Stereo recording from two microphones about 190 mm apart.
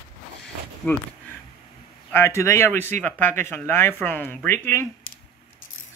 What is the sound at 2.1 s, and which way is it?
Speech, 15° left (ahead or behind).